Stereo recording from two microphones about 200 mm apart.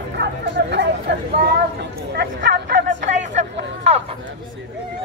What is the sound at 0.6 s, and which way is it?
Chatter, 55° right (ahead or behind).